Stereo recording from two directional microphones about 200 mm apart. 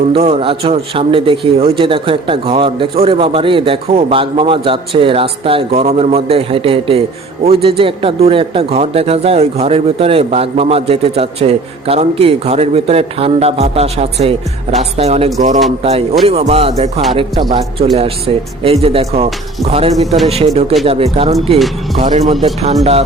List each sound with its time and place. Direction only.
0.1 s a man's voice: 30° right (ahead or behind)
22.3 s a man's voice: 25° right (ahead or behind)